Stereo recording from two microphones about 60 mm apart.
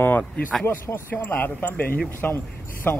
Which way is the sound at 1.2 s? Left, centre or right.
Left.